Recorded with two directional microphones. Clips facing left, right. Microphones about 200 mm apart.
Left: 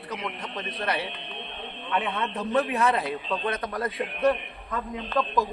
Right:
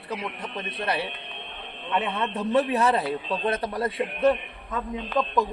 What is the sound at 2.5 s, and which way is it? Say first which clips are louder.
A man's voice: right 2 dB; 30° right (ahead or behind).